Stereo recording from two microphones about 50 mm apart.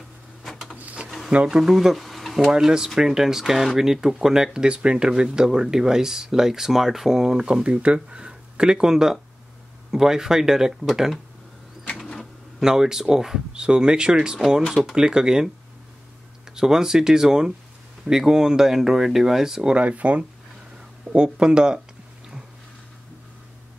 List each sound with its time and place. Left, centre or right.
1.0 s a sound: centre
1.5 s speech: centre
2.4 s speech: centre
12.5 s speech: centre
14.7 s speech: centre
15.0 s speech: centre
19.7 s speech: right